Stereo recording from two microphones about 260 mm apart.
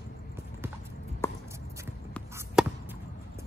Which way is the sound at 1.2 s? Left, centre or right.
Centre.